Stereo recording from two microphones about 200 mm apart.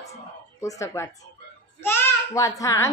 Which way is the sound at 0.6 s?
15° left (ahead or behind).